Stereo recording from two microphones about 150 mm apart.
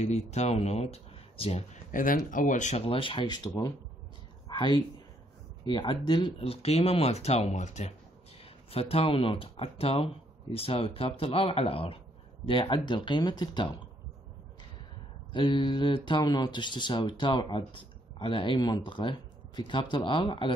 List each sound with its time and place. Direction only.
0.0 s speech: 50° left (ahead or behind)
1.9 s speech: 65° left (ahead or behind)
2.9 s speech: 35° left (ahead or behind)
4.5 s a sound: 30° left (ahead or behind)
5.7 s speech: 30° left (ahead or behind)
15.3 s speech: 30° left (ahead or behind)